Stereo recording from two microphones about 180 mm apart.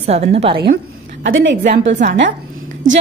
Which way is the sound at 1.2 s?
90° right.